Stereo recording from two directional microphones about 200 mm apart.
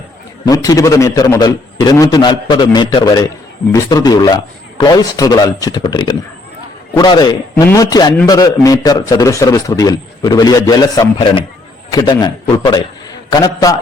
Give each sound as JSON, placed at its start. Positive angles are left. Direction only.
{"t": 0.4, "sound": "a man's voice", "side_deg": 20}